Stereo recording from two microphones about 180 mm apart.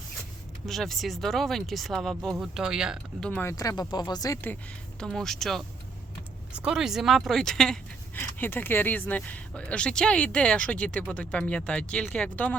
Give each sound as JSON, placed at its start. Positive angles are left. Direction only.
{"t": 0.6, "sound": "speech", "side_deg": 0}
{"t": 3.5, "sound": "speech", "side_deg": 20}
{"t": 4.9, "sound": "speech", "side_deg": 0}